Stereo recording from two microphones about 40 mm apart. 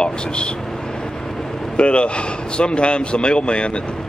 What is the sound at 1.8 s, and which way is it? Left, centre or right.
Speech, left.